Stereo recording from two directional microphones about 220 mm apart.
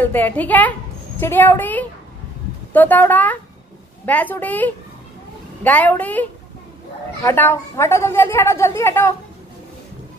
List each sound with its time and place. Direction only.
0.0 s a woman's voice: 10° left (ahead or behind)
7.2 s a woman's voice: 10° left (ahead or behind)